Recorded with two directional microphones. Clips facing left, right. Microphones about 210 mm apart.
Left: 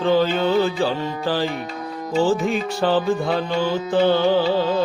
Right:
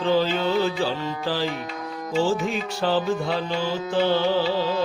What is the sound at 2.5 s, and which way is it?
Music, 55° left (ahead or behind).